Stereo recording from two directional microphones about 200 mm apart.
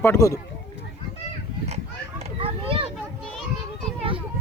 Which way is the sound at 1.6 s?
30° right (ahead or behind).